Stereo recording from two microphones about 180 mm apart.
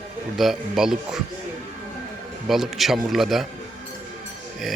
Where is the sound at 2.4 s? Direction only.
Centre (ahead or behind).